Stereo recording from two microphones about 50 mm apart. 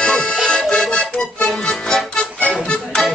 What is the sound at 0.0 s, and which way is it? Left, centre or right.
Accordion, centre.